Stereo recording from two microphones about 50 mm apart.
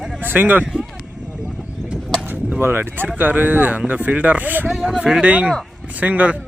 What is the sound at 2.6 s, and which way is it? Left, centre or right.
Speech, right.